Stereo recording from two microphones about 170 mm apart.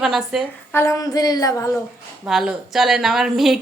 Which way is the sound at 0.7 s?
20° left (ahead or behind).